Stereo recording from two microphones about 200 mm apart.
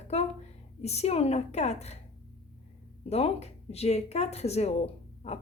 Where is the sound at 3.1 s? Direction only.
30° left (ahead or behind).